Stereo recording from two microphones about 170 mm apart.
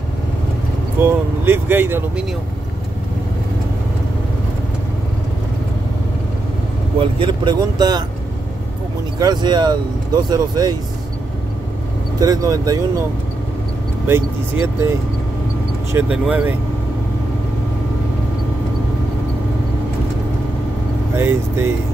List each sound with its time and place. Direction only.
1.0 s speech: 15° right (ahead or behind)
7.2 s speech: 25° right (ahead or behind)
9.2 s speech: 25° right (ahead or behind)
12.2 s speech: 20° right (ahead or behind)
14.0 s speech: 15° right (ahead or behind)
15.9 s speech: 10° right (ahead or behind)
21.2 s speech: 15° right (ahead or behind)